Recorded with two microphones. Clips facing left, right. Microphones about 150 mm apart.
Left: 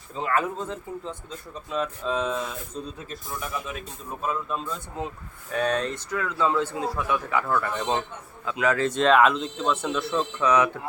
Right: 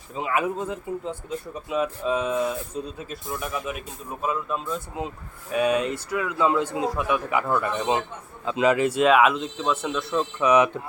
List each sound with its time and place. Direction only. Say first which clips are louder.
0.1 s speech: right 1 dB; 10° right (ahead or behind)
10.4 s speech: right 3 dB; 15° right (ahead or behind)